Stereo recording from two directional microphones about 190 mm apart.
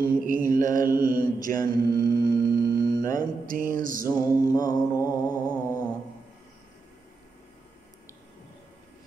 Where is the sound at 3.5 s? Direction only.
45° right (ahead or behind).